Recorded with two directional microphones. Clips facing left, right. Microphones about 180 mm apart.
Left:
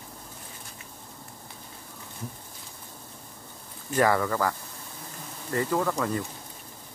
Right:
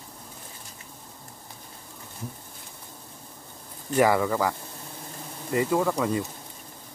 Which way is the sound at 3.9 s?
10° right (ahead or behind).